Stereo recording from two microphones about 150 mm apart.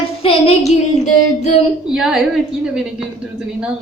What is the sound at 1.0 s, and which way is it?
Child singing, 50° left (ahead or behind).